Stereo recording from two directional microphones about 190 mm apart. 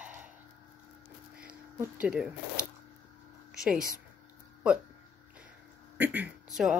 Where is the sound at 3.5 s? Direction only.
5° right (ahead or behind).